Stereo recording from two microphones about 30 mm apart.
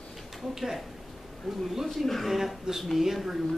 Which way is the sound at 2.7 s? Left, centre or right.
Right.